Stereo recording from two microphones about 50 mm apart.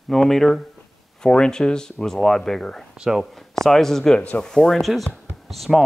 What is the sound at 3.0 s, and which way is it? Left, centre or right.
Speech, centre.